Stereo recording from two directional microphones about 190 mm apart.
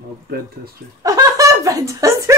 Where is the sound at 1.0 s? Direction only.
20° right (ahead or behind).